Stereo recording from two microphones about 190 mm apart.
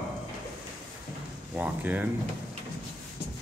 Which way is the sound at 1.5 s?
10° right (ahead or behind).